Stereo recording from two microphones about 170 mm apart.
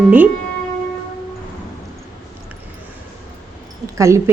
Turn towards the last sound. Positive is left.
turn(degrees=-15)  # may be behind; listen again after turning